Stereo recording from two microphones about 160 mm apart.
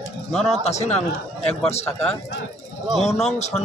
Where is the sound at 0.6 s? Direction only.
45° left (ahead or behind).